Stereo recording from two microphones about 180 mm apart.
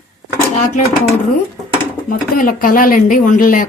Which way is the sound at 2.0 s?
50° left (ahead or behind).